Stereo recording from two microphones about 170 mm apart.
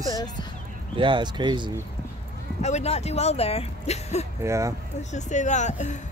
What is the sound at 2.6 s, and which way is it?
Speech, 40° left (ahead or behind).